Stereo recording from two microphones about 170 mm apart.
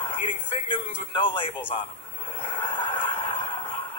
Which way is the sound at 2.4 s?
30° left (ahead or behind).